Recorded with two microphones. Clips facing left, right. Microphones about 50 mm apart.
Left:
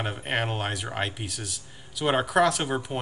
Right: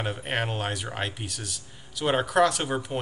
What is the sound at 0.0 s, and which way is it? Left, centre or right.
Speech, centre.